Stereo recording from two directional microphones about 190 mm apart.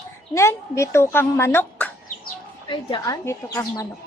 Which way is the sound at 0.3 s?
15° left (ahead or behind).